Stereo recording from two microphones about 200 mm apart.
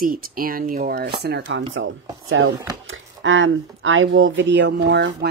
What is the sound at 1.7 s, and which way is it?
Speech, 75° right (ahead or behind).